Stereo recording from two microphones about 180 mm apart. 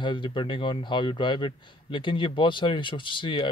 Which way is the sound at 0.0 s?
25° left (ahead or behind).